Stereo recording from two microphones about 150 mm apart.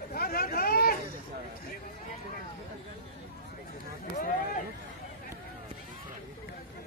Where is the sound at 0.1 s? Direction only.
80° left.